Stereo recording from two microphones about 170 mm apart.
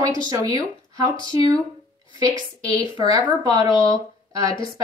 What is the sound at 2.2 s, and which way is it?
Speech, 20° right (ahead or behind).